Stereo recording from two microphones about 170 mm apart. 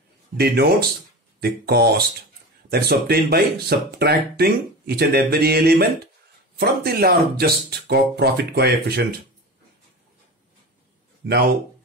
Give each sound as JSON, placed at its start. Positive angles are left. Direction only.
{"t": 0.4, "sound": "speech", "side_deg": -70}
{"t": 11.2, "sound": "speech", "side_deg": -70}